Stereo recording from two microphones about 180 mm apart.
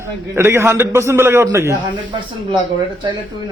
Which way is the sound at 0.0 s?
15° right (ahead or behind).